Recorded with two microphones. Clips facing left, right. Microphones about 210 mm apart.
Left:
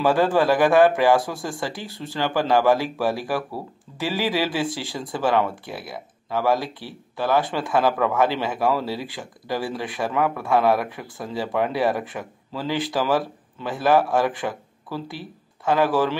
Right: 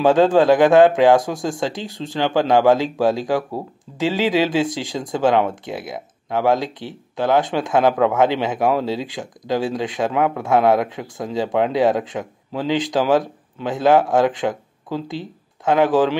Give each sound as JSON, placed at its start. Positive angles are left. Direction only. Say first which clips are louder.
{"t": 0.0, "sound": "speech", "louder": "right 5 dB", "side_deg": -20}